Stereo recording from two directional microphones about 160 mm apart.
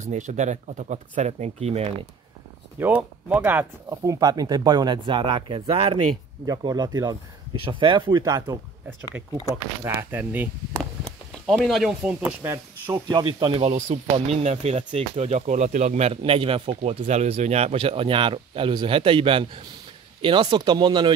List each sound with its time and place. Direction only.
0.0 s speech: 50° right (ahead or behind)
2.8 s speech: 10° right (ahead or behind)
9.8 s speech: 15° right (ahead or behind)
11.4 s speech: centre (ahead or behind)
13.1 s speech: 30° right (ahead or behind)
13.7 s speech: 55° right (ahead or behind)
14.1 s speech: 40° right (ahead or behind)
16.2 s speech: 35° right (ahead or behind)